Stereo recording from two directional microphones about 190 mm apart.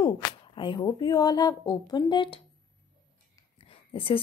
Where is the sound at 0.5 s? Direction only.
25° left (ahead or behind).